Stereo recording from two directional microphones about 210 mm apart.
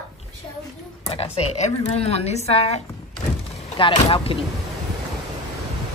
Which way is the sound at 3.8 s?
25° left (ahead or behind).